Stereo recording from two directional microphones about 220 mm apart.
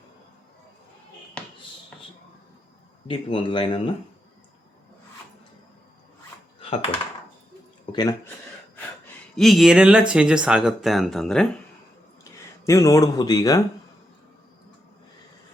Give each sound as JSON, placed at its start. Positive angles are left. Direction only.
{"t": 1.4, "sound": "basketball bounce", "side_deg": 5}
{"t": 3.1, "sound": "a man's voice", "side_deg": 25}
{"t": 6.6, "sound": "typing", "side_deg": 25}
{"t": 7.9, "sound": "a sound", "side_deg": 20}
{"t": 9.3, "sound": "speech", "side_deg": 0}
{"t": 12.2, "sound": "speech", "side_deg": 15}